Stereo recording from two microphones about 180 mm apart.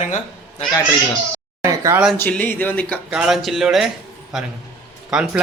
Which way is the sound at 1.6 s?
15° right (ahead or behind).